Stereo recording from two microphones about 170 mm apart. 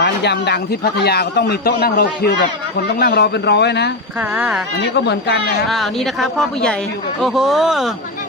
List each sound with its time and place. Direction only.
0.0 s a man's voice: 80° left
4.4 s speech: 10° right (ahead or behind)
4.8 s speech: 80° left
5.6 s speech: centre (ahead or behind)